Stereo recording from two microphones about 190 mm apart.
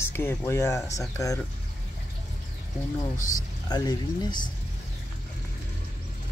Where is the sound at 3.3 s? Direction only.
20° left (ahead or behind).